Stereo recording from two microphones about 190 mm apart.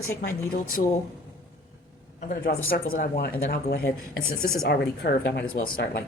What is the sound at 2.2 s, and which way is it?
Speech, 50° left (ahead or behind).